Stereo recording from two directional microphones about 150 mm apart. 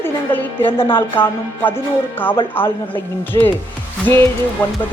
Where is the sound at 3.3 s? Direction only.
25° left (ahead or behind).